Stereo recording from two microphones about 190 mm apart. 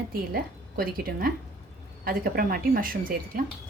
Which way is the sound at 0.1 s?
50° right (ahead or behind).